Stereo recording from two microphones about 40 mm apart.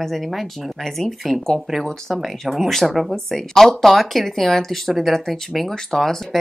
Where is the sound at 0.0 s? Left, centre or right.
Centre.